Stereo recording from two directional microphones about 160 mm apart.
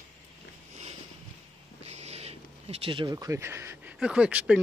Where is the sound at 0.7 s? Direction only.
40° right (ahead or behind).